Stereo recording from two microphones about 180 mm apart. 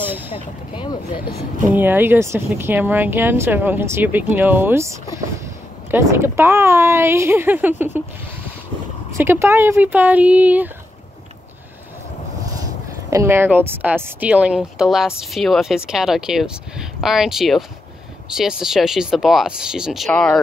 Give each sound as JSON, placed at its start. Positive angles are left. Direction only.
{"t": 0.3, "sound": "speech", "side_deg": 30}
{"t": 1.7, "sound": "speech", "side_deg": -10}
{"t": 9.2, "sound": "speech", "side_deg": -15}
{"t": 13.1, "sound": "speech", "side_deg": -15}